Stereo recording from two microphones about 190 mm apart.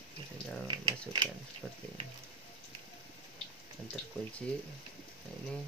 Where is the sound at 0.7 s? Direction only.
25° right (ahead or behind).